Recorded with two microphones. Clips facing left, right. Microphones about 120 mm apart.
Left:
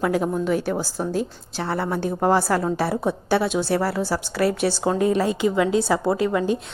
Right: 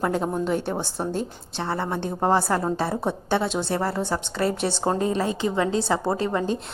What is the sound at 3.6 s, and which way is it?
Speech, 20° right (ahead or behind).